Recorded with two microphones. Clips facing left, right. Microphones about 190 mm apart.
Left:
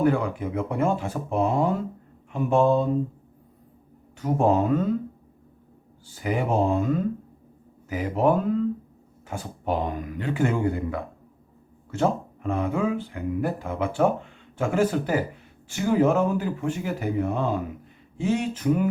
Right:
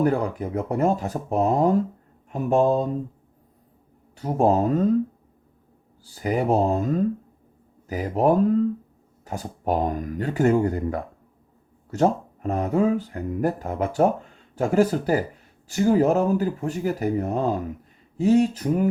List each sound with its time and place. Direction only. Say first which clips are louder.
0.0 s speech: even; 40° right (ahead or behind)
4.2 s speech: right 1 dB; 35° right (ahead or behind)
6.1 s speech: right 3 dB; 40° right (ahead or behind)